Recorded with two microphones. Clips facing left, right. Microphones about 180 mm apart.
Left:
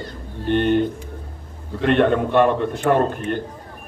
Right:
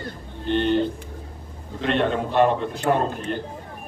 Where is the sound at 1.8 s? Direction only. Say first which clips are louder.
Left 5 dB; 55° left (ahead or behind).